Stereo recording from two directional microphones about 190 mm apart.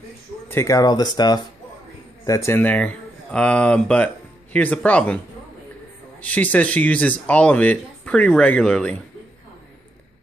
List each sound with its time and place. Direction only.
0.5 s speech: 15° left (ahead or behind)
6.2 s speech: 10° left (ahead or behind)